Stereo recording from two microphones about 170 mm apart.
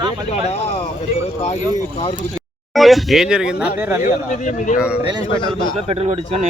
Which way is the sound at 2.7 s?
Centre (ahead or behind).